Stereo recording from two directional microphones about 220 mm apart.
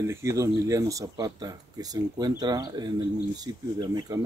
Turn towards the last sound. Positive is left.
turn(degrees=-20)  # may be behind; listen again after turning